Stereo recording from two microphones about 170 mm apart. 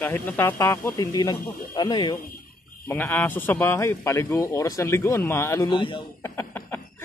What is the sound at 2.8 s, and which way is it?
Speech, 15° left (ahead or behind).